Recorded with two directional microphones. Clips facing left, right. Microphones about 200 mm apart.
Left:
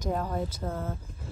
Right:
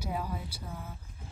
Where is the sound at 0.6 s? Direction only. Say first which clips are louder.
Left 10 dB; 90° left.